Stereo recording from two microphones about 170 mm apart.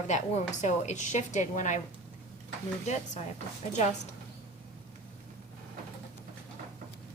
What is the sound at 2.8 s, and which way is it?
Speech, 40° left (ahead or behind).